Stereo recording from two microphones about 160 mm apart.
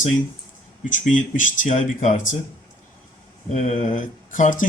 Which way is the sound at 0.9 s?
55° left (ahead or behind).